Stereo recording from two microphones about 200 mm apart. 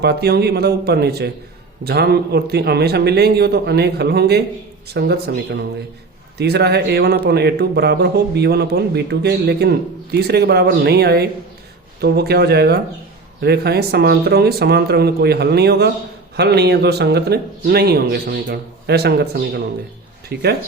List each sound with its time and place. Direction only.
0.0 s a man's voice: 55° right (ahead or behind)